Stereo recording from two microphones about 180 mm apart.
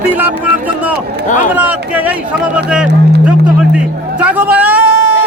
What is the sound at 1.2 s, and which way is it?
Speech, 45° left (ahead or behind).